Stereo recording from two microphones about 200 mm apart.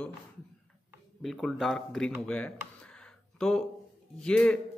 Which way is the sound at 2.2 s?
5° left (ahead or behind).